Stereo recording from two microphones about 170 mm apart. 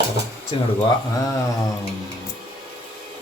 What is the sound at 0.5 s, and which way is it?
Cutlery, 30° left (ahead or behind).